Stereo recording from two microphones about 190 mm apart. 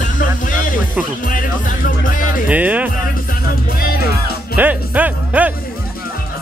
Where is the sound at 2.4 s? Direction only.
5° right (ahead or behind).